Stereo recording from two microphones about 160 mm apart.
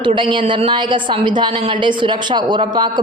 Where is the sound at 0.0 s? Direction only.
30° right (ahead or behind).